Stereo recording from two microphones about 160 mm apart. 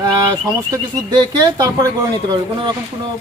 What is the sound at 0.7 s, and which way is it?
Speech, 25° right (ahead or behind).